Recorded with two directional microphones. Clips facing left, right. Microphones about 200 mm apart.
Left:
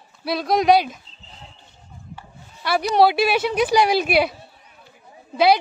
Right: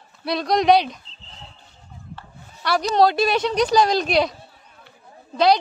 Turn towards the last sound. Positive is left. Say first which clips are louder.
# left 1 dB
turn(degrees=10)  # may be behind; listen again after turning